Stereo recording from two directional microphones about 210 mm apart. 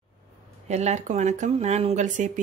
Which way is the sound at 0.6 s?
30° right (ahead or behind).